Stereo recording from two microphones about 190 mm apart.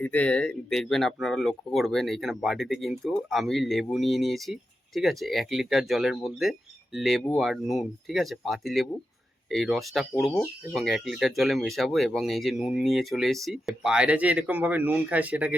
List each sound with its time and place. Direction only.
0.0 s speech: 10° left (ahead or behind); by 15.5 s 10° right (ahead or behind)